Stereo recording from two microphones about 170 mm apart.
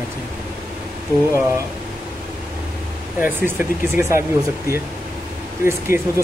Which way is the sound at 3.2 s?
10° right (ahead or behind).